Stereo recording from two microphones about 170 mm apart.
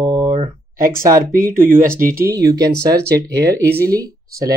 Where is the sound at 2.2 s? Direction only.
20° right (ahead or behind).